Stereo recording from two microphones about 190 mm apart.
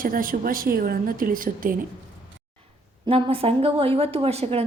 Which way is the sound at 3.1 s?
30° right (ahead or behind).